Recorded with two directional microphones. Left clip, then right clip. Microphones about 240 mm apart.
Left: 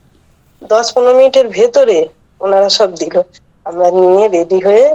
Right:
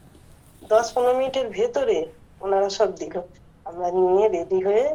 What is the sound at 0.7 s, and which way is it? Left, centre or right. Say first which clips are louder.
A woman's voice: left 10 dB; left.